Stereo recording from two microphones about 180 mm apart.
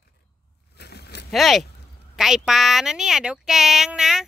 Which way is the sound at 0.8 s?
65° left (ahead or behind).